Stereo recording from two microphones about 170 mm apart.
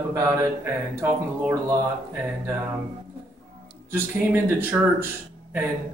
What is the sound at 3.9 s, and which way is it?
Speech, 15° right (ahead or behind).